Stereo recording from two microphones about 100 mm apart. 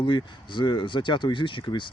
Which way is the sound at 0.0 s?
55° left (ahead or behind).